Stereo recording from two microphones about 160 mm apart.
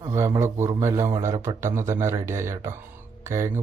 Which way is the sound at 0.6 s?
15° right (ahead or behind).